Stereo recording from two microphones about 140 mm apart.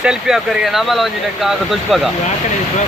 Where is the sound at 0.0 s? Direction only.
5° right (ahead or behind).